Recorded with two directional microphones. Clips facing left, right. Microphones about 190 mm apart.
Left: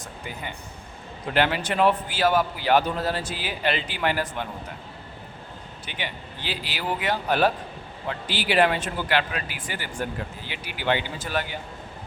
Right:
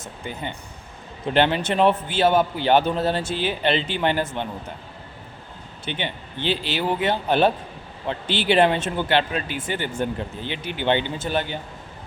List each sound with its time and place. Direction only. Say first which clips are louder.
0.0 s a man's voice: right 4 dB; 25° right (ahead or behind)
5.8 s a man's voice: right 6 dB; 25° right (ahead or behind)